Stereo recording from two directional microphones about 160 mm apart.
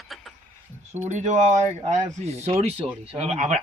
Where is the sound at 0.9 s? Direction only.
50° right (ahead or behind).